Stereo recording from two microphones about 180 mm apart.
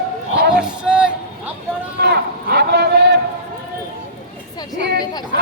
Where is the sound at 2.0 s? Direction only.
65° right (ahead or behind).